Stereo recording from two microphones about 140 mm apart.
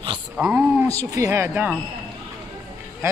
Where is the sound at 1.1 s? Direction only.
20° right (ahead or behind).